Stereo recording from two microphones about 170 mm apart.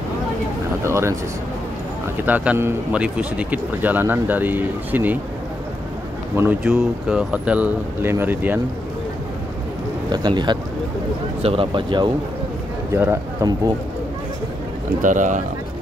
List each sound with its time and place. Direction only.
0.8 s speech: 15° right (ahead or behind)
2.2 s a man's voice: 10° right (ahead or behind)
6.3 s a man's voice: 15° right (ahead or behind)
10.1 s speech: 25° right (ahead or behind)
12.9 s a man's voice: 15° right (ahead or behind)
15.0 s speech: 50° right (ahead or behind)